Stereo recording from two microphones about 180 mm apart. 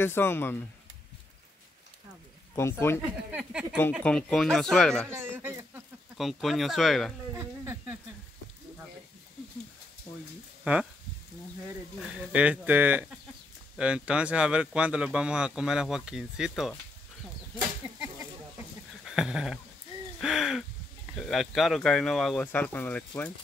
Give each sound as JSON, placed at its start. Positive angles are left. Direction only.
{"t": 0.0, "sound": "speech", "side_deg": 10}
{"t": 2.5, "sound": "speech", "side_deg": 15}
{"t": 3.3, "sound": "speech", "side_deg": -10}
{"t": 4.0, "sound": "speech", "side_deg": 5}
{"t": 5.1, "sound": "speech", "side_deg": -15}
{"t": 6.1, "sound": "speech", "side_deg": 0}
{"t": 7.3, "sound": "speech", "side_deg": -15}
{"t": 10.6, "sound": "speech", "side_deg": -5}
{"t": 12.0, "sound": "speech", "side_deg": -5}
{"t": 19.0, "sound": "a sound", "side_deg": -5}
{"t": 21.2, "sound": "speech", "side_deg": 0}